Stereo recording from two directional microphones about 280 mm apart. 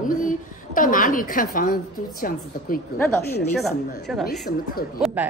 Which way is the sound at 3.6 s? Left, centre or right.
Centre.